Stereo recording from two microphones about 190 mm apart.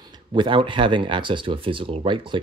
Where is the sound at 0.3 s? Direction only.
25° right (ahead or behind).